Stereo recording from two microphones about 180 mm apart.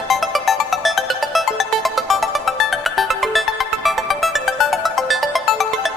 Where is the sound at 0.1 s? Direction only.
Centre (ahead or behind).